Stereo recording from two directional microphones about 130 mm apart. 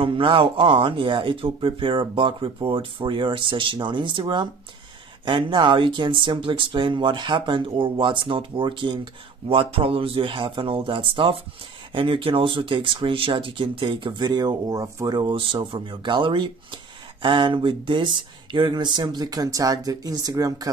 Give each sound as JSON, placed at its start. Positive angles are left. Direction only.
{"t": 0.0, "sound": "speech", "side_deg": -45}
{"t": 15.2, "sound": "speech", "side_deg": -40}